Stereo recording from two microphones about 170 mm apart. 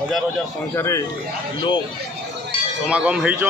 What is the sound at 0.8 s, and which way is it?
Speech, 15° left (ahead or behind).